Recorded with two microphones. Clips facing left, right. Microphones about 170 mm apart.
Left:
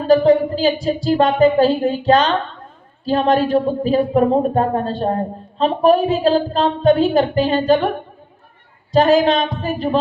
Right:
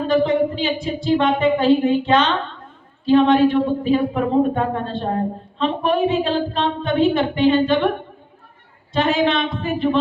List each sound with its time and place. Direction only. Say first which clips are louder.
0.1 s a man's voice: left 6 dB; 40° left (ahead or behind)
8.9 s a man's voice: left 5 dB; 40° left (ahead or behind)